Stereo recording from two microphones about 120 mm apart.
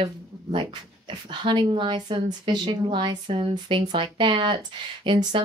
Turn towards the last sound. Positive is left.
turn(degrees=-45)  # may be behind; listen again after turning